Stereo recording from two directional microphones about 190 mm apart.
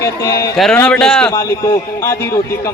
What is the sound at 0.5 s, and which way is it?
Speech, centre (ahead or behind).